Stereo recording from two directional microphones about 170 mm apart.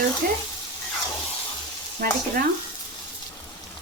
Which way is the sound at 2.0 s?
60° right (ahead or behind).